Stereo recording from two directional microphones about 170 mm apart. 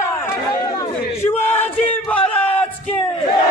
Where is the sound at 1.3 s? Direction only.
10° left (ahead or behind).